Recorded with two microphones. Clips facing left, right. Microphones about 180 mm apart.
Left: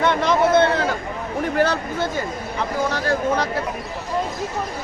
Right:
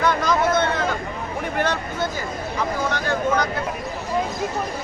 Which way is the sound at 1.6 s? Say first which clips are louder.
Left 3 dB; 35° left (ahead or behind).